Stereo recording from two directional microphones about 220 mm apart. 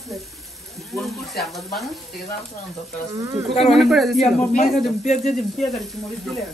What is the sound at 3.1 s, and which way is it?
Speech, 15° right (ahead or behind).